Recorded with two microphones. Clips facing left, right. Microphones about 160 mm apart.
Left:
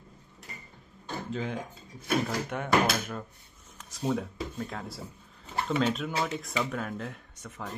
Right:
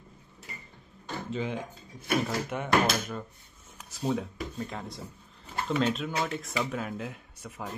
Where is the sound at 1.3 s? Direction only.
Centre (ahead or behind).